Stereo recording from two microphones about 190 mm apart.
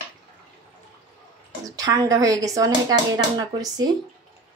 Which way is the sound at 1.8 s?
20° right (ahead or behind).